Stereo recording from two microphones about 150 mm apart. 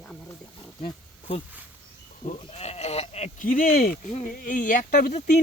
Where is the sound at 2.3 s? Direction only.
45° left (ahead or behind).